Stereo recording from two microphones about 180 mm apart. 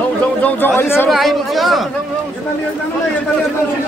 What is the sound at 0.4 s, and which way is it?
Speech, 10° left (ahead or behind).